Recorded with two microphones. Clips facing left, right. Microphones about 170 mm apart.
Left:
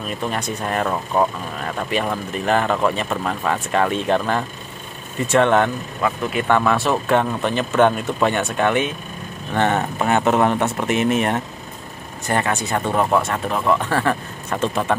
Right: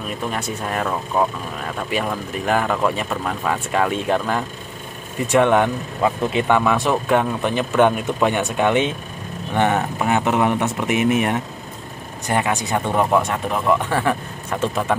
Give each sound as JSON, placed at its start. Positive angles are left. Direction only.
{"t": 0.3, "sound": "speech", "side_deg": 0}
{"t": 1.8, "sound": "speech", "side_deg": -5}
{"t": 6.4, "sound": "speech", "side_deg": -10}